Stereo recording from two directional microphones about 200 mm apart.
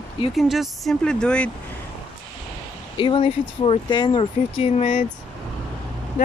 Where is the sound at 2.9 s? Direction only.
25° left (ahead or behind).